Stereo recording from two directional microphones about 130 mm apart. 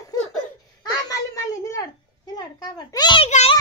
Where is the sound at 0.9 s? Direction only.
25° left (ahead or behind).